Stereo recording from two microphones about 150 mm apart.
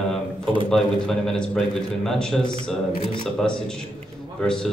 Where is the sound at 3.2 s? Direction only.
5° left (ahead or behind).